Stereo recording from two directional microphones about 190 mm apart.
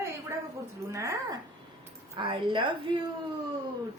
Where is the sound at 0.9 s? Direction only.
15° right (ahead or behind).